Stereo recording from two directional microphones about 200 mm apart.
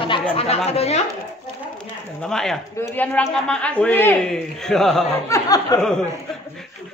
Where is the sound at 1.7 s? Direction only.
5° left (ahead or behind).